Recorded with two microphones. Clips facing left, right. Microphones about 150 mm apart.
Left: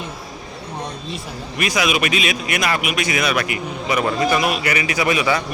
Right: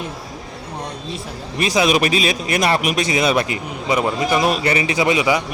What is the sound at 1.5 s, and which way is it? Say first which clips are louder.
Speech: right 4 dB; 30° right (ahead or behind).